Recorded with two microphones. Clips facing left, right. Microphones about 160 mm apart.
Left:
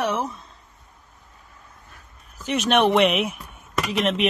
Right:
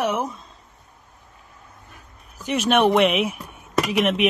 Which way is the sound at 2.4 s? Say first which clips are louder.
Right 1 dB; 5° right (ahead or behind).